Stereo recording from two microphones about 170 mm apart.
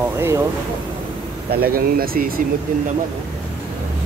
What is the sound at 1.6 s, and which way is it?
Speech, 60° right (ahead or behind).